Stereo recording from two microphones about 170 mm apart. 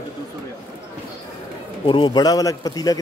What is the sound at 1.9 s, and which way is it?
A man's voice, 25° left (ahead or behind).